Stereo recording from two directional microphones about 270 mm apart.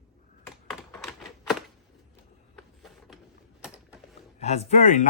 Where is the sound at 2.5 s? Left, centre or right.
Centre.